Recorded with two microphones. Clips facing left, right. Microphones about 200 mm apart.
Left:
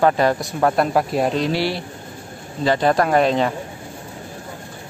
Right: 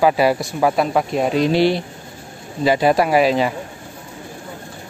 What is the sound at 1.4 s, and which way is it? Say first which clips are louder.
Speech: right 5 dB; 20° right (ahead or behind).